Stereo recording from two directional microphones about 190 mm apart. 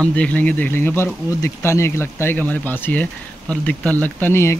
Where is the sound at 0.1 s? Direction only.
10° left (ahead or behind).